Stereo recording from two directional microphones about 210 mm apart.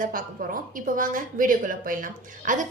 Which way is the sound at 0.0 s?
40° right (ahead or behind).